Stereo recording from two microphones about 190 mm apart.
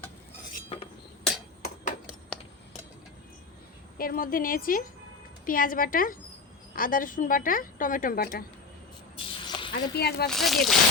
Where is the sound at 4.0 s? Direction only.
50° left (ahead or behind).